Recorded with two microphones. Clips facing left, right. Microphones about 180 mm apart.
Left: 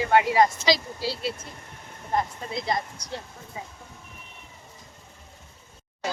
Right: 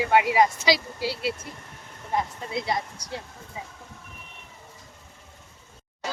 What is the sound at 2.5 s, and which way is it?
Speech, 10° right (ahead or behind).